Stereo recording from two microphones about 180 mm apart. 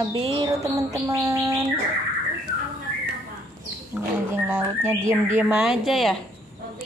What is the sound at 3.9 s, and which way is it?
A woman's voice, 10° right (ahead or behind).